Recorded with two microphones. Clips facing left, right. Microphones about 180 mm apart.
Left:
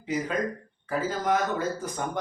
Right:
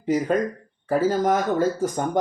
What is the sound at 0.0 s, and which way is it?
Speech, 45° right (ahead or behind).